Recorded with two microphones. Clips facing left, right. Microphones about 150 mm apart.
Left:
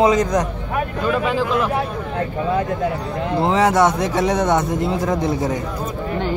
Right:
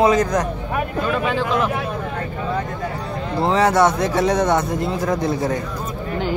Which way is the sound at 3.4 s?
20° left (ahead or behind).